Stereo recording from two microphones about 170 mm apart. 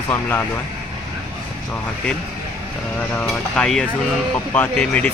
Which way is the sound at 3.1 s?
5° left (ahead or behind).